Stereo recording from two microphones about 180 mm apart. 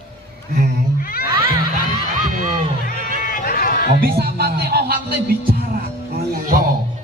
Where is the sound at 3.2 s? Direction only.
50° left (ahead or behind).